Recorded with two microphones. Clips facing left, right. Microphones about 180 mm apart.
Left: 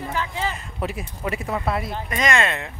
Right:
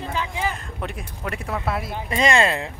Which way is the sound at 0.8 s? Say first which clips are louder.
Left 3 dB; 5° left (ahead or behind).